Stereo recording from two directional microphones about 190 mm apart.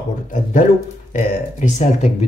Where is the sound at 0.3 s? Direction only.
45° left (ahead or behind).